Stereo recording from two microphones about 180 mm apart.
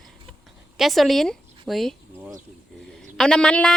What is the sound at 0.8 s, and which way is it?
Speech, centre (ahead or behind).